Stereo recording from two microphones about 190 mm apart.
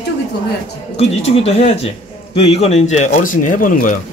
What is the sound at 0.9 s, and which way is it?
Speech, 35° left (ahead or behind).